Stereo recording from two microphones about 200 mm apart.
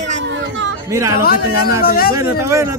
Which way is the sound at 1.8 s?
50° left (ahead or behind).